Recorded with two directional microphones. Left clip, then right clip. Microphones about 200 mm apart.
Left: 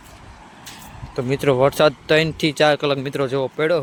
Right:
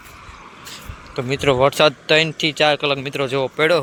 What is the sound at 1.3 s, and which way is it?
Speech, 20° left (ahead or behind).